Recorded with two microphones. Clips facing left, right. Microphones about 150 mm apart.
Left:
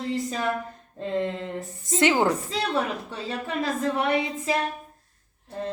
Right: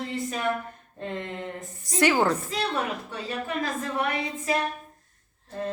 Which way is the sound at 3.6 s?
25° left (ahead or behind).